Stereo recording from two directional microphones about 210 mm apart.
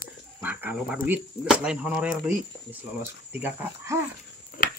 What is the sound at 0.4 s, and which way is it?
Speech, 10° right (ahead or behind).